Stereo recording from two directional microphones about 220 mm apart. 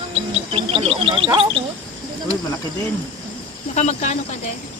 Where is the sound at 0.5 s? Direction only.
25° right (ahead or behind).